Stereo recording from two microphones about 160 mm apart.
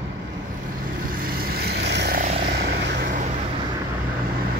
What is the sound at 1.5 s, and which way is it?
Vehicle, 85° right.